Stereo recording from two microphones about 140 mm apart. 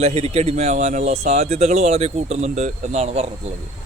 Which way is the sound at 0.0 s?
50° right (ahead or behind).